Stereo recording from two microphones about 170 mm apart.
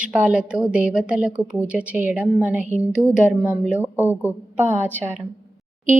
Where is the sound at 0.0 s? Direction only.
5° right (ahead or behind).